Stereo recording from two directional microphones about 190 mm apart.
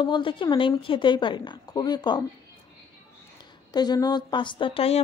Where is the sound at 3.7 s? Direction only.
20° left (ahead or behind).